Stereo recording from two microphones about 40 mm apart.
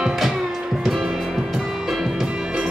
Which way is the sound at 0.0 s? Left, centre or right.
Centre.